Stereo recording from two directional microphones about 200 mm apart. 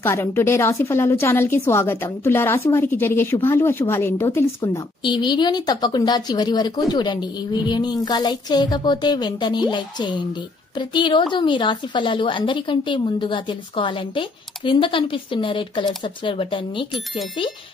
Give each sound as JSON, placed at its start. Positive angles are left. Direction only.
{"t": 0.0, "sound": "a woman's voice", "side_deg": 10}
{"t": 5.0, "sound": "a woman's voice", "side_deg": 20}